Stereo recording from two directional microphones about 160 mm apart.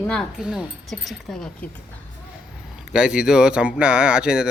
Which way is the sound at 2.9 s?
5° right (ahead or behind).